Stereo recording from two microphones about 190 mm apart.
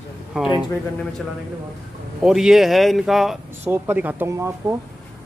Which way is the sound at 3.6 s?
10° right (ahead or behind).